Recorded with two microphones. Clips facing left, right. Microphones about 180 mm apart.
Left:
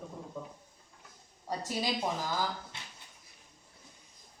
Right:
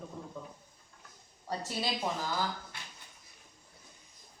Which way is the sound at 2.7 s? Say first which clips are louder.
Even; 25° left (ahead or behind).